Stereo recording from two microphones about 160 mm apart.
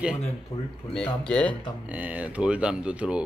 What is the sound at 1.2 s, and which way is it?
Speech, 10° left (ahead or behind).